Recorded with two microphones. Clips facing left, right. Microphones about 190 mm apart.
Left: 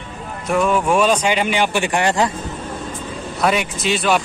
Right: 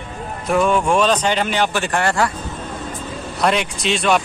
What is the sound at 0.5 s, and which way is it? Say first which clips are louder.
Speech: even; centre (ahead or behind).